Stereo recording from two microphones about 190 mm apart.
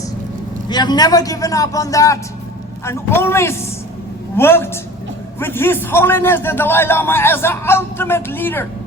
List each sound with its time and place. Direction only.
0.7 s a man's voice: 20° left (ahead or behind)